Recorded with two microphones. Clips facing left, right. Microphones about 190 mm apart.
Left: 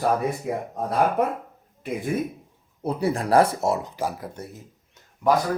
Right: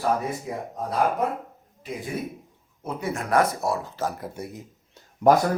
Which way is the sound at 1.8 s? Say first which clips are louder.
Left 5 dB; 60° left (ahead or behind).